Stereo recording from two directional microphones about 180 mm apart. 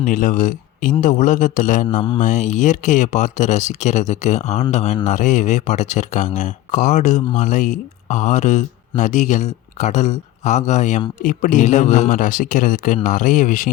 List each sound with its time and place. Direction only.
0.0 s speech: 45° left (ahead or behind)